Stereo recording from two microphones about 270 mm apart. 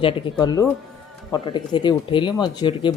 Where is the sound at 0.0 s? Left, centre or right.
Centre.